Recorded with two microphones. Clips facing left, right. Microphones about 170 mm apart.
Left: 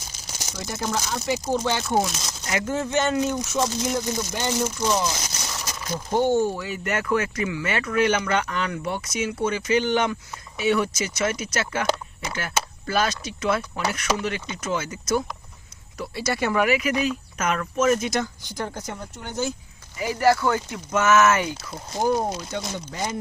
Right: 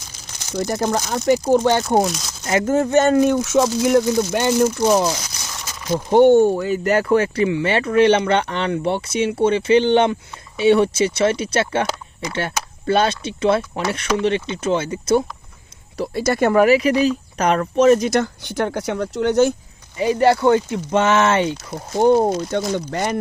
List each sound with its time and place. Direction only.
0.5 s speech: 45° right (ahead or behind)
3.3 s speech: 90° right; by 5.1 s 55° right (ahead or behind)
6.1 s speech: 65° right (ahead or behind)
6.7 s speech: 35° right (ahead or behind)
16.1 s speech: 50° right (ahead or behind); by 18.1 s 35° right (ahead or behind)
18.1 s speech: 65° right (ahead or behind)
20.0 s speech: 25° right (ahead or behind)
22.3 s speech: 50° right (ahead or behind)